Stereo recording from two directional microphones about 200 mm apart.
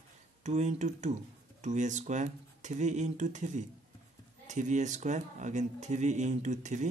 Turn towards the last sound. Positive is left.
turn(degrees=-35)  # may be behind; listen again after turning